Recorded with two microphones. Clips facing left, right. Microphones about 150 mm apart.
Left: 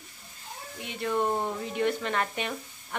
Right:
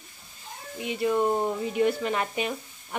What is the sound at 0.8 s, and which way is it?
Dishes, 5° right (ahead or behind).